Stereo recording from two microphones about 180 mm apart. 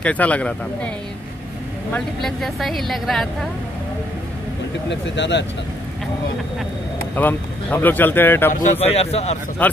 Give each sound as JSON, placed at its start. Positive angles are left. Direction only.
{"t": 0.0, "sound": "speech", "side_deg": 10}
{"t": 4.8, "sound": "speech", "side_deg": 80}
{"t": 7.2, "sound": "speech", "side_deg": 10}
{"t": 8.7, "sound": "a man's voice", "side_deg": 35}
{"t": 9.6, "sound": "speech", "side_deg": 10}